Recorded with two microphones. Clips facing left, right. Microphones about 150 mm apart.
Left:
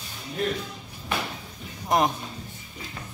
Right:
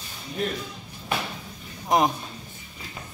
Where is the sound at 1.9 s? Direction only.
Centre (ahead or behind).